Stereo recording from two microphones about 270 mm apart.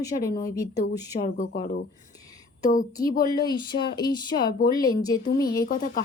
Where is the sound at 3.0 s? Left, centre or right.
Left.